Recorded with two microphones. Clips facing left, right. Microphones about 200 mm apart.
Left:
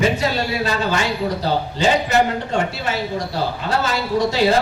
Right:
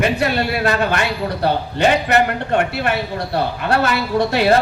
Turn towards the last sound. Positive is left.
turn(degrees=-60)  # may be behind; listen again after turning